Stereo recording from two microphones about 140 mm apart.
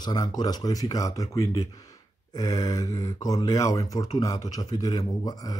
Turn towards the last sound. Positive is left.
turn(degrees=25)  # may be behind; listen again after turning